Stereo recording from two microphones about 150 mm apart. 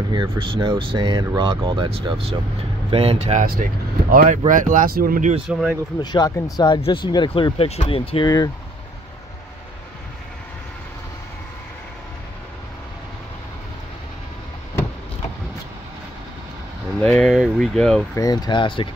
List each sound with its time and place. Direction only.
0.4 s speech: 35° right (ahead or behind)
3.4 s speech: 75° right (ahead or behind)
5.5 s speech: 5° right (ahead or behind)
5.9 s speech: 30° left (ahead or behind)
17.0 s speech: 5° left (ahead or behind)
18.1 s speech: 25° left (ahead or behind)